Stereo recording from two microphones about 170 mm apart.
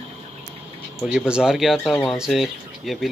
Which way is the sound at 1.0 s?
5° right (ahead or behind).